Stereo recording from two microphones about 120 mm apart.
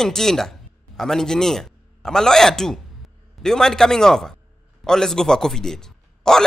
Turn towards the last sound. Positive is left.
turn(degrees=5)  # may be behind; listen again after turning